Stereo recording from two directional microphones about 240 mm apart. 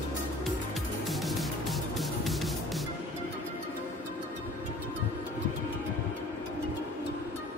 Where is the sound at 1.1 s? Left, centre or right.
Centre.